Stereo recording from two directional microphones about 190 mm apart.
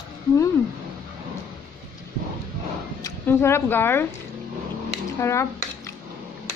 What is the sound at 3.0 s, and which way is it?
A woman's voice, 15° left (ahead or behind).